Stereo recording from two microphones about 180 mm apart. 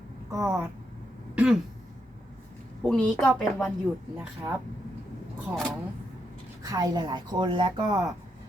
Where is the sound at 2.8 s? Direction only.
5° left (ahead or behind).